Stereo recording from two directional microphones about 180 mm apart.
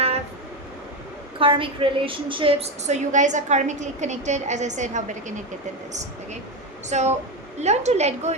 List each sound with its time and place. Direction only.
1.4 s a woman's voice: 30° right (ahead or behind)
6.9 s a woman's voice: 40° right (ahead or behind)